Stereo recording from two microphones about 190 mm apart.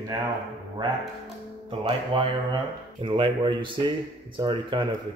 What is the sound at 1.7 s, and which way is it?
Speech, 30° right (ahead or behind).